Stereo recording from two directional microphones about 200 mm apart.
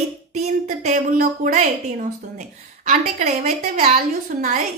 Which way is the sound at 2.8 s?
35° right (ahead or behind).